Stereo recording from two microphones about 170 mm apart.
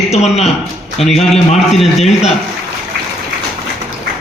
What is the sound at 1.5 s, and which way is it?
Speech, centre (ahead or behind).